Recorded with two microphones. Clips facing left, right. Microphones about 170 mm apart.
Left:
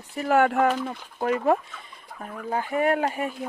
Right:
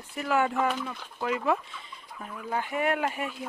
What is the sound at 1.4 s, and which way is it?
Speech, 50° left (ahead or behind).